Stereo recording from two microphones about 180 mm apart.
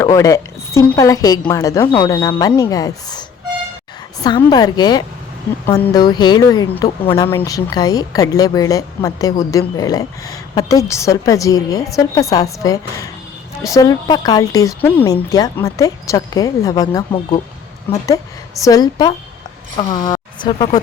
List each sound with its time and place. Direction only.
0.0 s a woman's voice: 20° left (ahead or behind)
7.3 s a woman's voice: 15° left (ahead or behind)